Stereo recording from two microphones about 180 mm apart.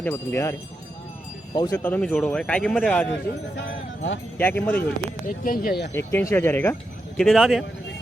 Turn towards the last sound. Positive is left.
turn(degrees=0)  # may be behind; listen again after turning